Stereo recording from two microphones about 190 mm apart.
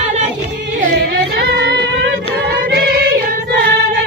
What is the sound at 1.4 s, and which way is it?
Music, 65° right (ahead or behind).